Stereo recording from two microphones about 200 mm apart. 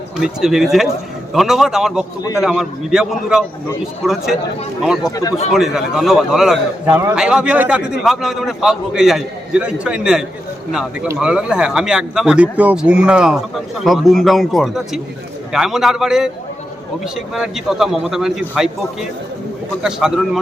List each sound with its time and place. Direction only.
0.2 s a man's voice: centre (ahead or behind)
5.0 s a man's voice: 15° left (ahead or behind)
5.5 s a man's voice: centre (ahead or behind)
17.3 s a man's voice: centre (ahead or behind)
19.8 s a man's voice: centre (ahead or behind)